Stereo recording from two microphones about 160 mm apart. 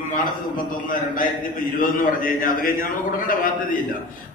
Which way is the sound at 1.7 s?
60° left (ahead or behind).